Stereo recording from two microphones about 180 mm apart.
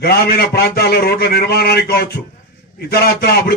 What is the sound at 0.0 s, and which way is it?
A man's voice, 60° left (ahead or behind).